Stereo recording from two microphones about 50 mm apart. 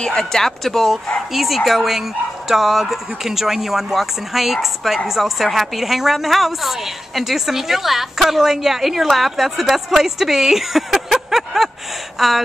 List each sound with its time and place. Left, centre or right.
0.0 s speech: centre